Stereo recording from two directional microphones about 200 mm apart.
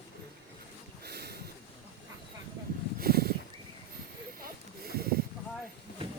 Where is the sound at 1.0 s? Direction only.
55° right (ahead or behind).